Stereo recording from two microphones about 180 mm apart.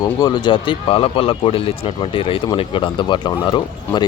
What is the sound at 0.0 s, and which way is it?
A man's voice, 20° left (ahead or behind).